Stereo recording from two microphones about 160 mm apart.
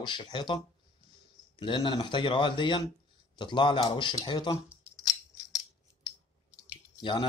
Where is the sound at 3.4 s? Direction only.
30° left (ahead or behind).